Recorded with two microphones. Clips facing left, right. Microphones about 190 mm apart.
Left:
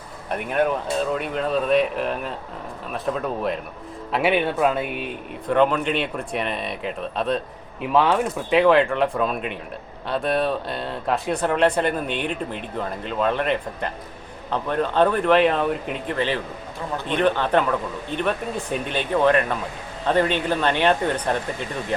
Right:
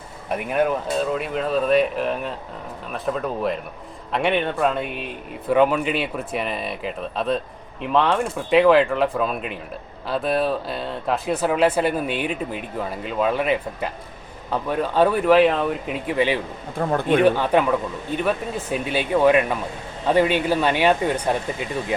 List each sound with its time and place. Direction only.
0.3 s speech: 5° right (ahead or behind)
16.7 s a man's voice: 55° right (ahead or behind)
17.2 s speech: 10° right (ahead or behind)